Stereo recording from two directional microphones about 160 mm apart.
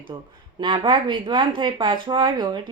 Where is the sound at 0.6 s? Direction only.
30° right (ahead or behind).